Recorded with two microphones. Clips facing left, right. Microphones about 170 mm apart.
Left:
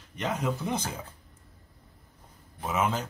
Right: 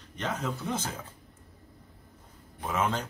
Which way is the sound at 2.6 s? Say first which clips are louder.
Left 1 dB; 5° left (ahead or behind).